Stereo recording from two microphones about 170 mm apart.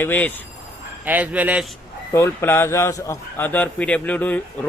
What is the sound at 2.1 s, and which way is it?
A man's voice, 15° left (ahead or behind).